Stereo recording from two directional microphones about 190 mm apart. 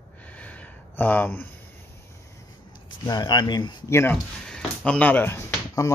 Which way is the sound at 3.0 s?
20° left (ahead or behind).